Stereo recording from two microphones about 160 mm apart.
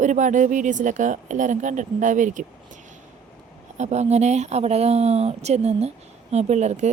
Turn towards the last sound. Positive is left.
turn(degrees=-45)  # may be behind; listen again after turning